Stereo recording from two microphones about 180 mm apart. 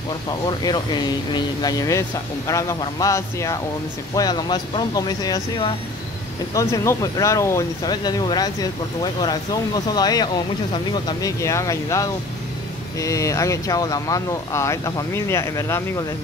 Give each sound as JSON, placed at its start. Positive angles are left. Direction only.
{"t": 0.3, "sound": "speech", "side_deg": 25}